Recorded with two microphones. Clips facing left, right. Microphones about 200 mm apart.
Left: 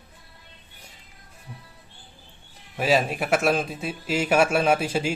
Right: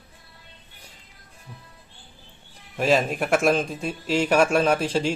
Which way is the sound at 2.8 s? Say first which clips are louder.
Right 1 dB; 5° left (ahead or behind).